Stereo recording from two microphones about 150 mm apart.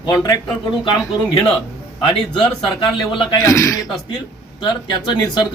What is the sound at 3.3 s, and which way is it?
Speech, 20° left (ahead or behind).